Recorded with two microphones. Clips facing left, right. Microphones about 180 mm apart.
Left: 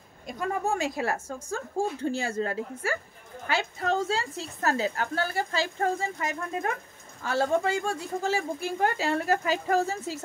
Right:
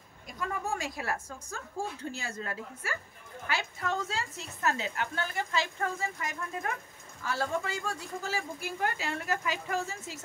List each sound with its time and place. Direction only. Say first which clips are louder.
0.3 s a woman's voice: left 6 dB; 30° left (ahead or behind)